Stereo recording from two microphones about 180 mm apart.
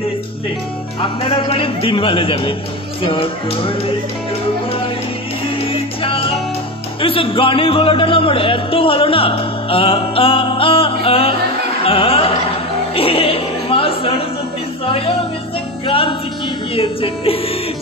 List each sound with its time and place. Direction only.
1.5 s speech: 30° left (ahead or behind)
5.7 s music: 30° left (ahead or behind)
7.0 s speech: 30° left (ahead or behind)
11.8 s music: 30° left (ahead or behind)
15.9 s music: 30° left (ahead or behind)
16.7 s speech: 30° left (ahead or behind)